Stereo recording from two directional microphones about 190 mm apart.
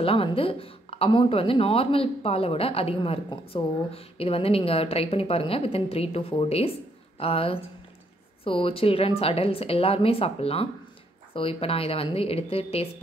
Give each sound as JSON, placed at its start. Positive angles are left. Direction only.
{"t": 0.0, "sound": "speech", "side_deg": 30}